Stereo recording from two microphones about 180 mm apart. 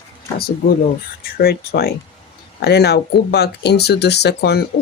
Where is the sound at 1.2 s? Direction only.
60° left (ahead or behind).